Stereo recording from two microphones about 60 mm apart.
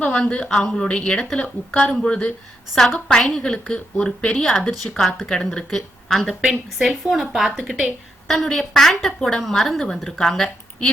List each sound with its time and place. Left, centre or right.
0.0 s a woman's voice: centre
3.3 s a woman's voice: centre
5.2 s speech: centre
6.4 s a woman's voice: centre
6.8 s a woman's voice: centre